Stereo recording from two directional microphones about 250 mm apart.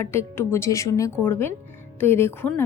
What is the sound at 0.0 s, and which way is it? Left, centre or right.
Speech, centre.